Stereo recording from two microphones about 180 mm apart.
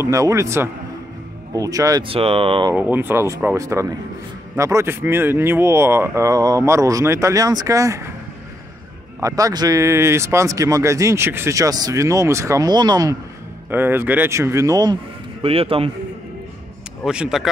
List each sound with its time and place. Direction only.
0.0 s speech: 15° right (ahead or behind)
2.0 s speech: 30° right (ahead or behind)
2.7 s speech: 10° right (ahead or behind)
9.2 s speech: 20° right (ahead or behind)
13.7 s speech: 10° right (ahead or behind)
15.4 s speech: 30° right (ahead or behind)
17.0 s speech: 5° right (ahead or behind)